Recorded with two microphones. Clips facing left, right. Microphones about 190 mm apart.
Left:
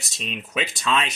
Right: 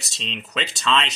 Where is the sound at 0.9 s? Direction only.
10° left (ahead or behind).